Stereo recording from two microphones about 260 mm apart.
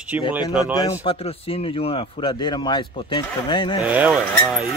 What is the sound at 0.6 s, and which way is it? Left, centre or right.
A man's voice, centre.